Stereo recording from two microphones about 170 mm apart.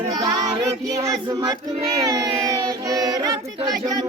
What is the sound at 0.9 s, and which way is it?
Music, 20° right (ahead or behind).